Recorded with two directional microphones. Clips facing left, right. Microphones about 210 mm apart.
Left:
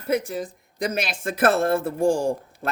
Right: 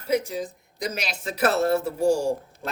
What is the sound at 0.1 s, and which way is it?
Speech, 55° left (ahead or behind).